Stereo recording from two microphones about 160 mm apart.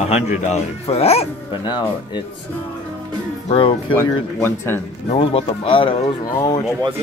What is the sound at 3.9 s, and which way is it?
Speech, 15° left (ahead or behind).